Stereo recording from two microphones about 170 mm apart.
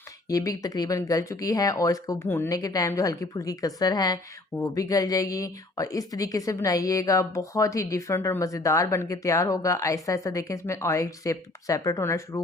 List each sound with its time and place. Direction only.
0.3 s a woman's voice: 20° left (ahead or behind)